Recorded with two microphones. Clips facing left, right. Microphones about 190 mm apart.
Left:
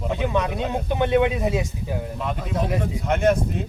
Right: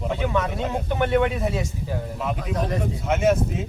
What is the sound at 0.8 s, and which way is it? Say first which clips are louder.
A man's voice: left 2 dB; 20° left (ahead or behind).